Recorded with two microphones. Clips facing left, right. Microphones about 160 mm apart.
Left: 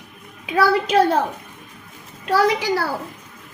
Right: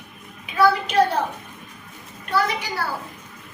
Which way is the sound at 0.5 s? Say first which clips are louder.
Left 1 dB; 90° left.